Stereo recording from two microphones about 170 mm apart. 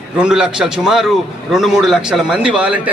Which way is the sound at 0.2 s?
5° right (ahead or behind).